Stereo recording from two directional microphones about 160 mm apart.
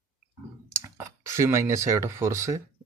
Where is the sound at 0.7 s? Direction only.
15° right (ahead or behind).